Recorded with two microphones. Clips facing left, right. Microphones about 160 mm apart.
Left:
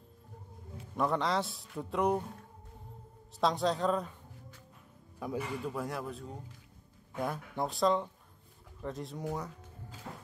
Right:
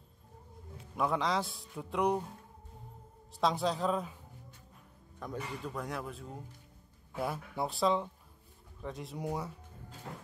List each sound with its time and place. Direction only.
0.9 s a man's voice: centre (ahead or behind)
3.3 s a man's voice: centre (ahead or behind)
5.2 s a man's voice: 10° left (ahead or behind)
9.2 s speech: 15° right (ahead or behind)